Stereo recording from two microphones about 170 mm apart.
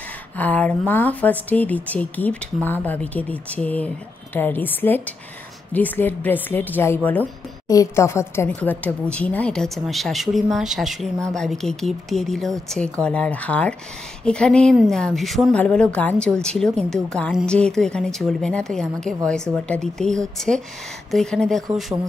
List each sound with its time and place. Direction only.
0.4 s speech: 10° left (ahead or behind)